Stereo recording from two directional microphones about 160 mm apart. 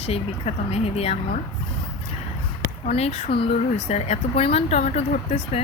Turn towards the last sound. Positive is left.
turn(degrees=40)  # may be behind; listen again after turning